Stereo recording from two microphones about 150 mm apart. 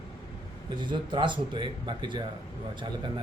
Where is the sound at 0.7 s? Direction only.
30° right (ahead or behind).